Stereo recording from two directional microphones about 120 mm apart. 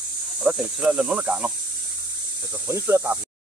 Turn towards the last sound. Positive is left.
turn(degrees=-20)  # may be behind; listen again after turning